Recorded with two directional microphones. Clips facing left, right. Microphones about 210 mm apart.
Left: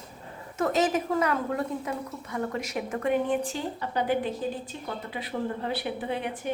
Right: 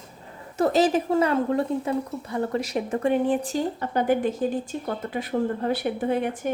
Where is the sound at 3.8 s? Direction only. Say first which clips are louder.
Right 3 dB; 50° right (ahead or behind).